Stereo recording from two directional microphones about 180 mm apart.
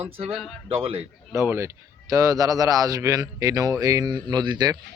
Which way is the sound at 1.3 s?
15° right (ahead or behind).